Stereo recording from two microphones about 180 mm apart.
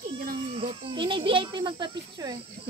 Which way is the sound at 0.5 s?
30° right (ahead or behind).